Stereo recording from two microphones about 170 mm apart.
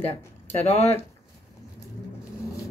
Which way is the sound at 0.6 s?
40° left (ahead or behind).